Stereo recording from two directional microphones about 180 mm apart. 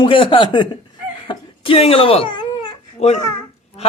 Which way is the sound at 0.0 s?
30° left (ahead or behind).